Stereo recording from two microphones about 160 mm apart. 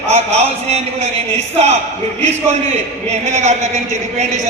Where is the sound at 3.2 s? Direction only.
45° right (ahead or behind).